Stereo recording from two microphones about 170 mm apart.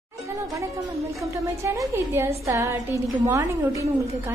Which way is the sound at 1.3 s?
15° right (ahead or behind).